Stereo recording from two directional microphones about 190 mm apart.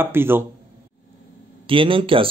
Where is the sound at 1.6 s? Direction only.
25° right (ahead or behind).